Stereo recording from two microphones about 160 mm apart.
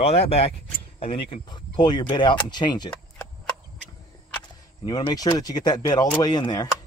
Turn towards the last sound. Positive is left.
turn(degrees=25)  # may be behind; listen again after turning